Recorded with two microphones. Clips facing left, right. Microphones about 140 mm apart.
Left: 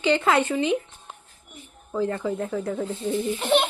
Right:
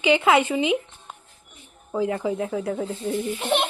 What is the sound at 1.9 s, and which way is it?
Speech, 10° right (ahead or behind).